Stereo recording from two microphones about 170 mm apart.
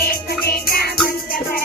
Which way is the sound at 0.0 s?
65° left (ahead or behind).